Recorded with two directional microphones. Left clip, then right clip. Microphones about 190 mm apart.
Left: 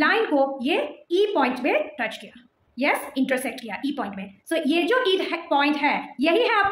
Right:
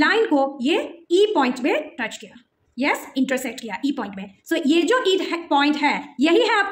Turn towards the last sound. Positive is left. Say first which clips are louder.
# right 2 dB
turn(degrees=-30)  # may be behind; listen again after turning